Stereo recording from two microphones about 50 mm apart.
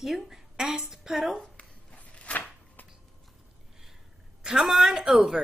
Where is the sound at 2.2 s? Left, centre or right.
Left.